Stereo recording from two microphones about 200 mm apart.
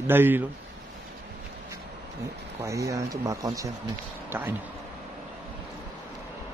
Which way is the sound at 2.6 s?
15° right (ahead or behind).